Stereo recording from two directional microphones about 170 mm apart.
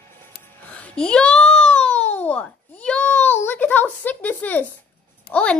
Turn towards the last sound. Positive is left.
turn(degrees=5)  # may be behind; listen again after turning